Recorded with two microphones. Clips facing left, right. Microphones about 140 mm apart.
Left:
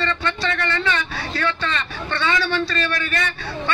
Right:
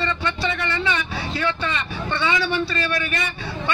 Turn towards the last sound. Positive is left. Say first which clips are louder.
# left 1 dB
turn(degrees=-15)  # may be behind; listen again after turning